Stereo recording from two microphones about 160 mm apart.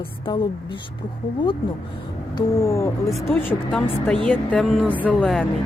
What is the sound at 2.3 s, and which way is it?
Speech, 20° left (ahead or behind).